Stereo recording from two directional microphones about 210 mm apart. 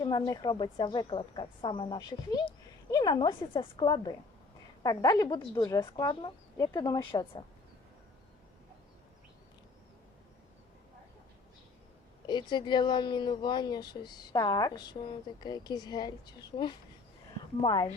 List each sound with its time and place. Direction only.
0.0 s speech: 20° left (ahead or behind)
12.2 s speech: 20° left (ahead or behind)